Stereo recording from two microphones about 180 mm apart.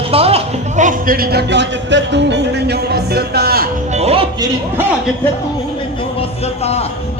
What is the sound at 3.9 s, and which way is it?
Speech, 35° right (ahead or behind).